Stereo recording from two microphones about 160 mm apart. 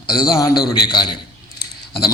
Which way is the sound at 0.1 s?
20° left (ahead or behind).